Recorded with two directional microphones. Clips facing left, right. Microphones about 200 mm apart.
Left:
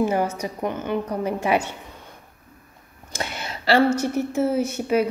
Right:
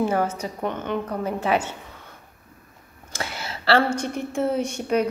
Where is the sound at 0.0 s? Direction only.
10° left (ahead or behind).